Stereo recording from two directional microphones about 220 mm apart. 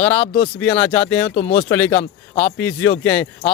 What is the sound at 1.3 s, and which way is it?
Speech, 40° left (ahead or behind).